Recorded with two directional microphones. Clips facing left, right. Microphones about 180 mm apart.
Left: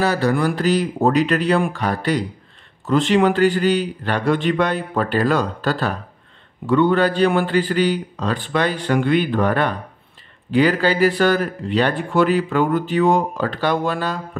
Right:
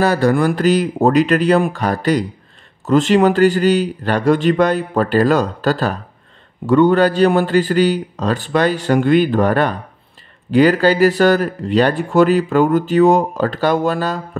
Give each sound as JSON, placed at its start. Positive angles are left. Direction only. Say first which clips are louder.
{"t": 0.0, "sound": "speech", "louder": "right 4 dB", "side_deg": -45}